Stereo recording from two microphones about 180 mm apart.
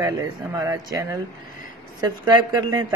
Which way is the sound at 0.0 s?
20° right (ahead or behind).